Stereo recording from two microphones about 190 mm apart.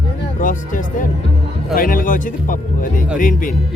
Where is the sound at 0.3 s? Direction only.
45° left (ahead or behind).